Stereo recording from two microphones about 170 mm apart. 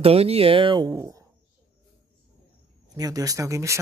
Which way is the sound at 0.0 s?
35° right (ahead or behind).